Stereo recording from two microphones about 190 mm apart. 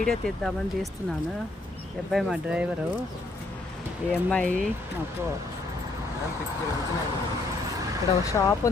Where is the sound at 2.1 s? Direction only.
5° right (ahead or behind).